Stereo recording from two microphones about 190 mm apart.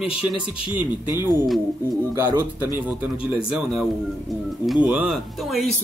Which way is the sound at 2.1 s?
10° right (ahead or behind).